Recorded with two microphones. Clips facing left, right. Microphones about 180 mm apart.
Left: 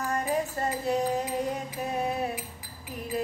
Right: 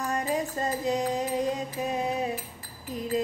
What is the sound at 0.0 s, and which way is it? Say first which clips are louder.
Music: even; 15° right (ahead or behind).